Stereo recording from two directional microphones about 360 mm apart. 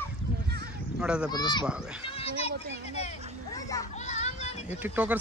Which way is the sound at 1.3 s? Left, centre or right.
Centre.